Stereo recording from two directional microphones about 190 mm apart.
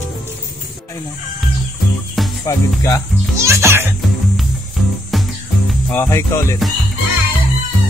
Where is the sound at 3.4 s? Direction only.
15° right (ahead or behind).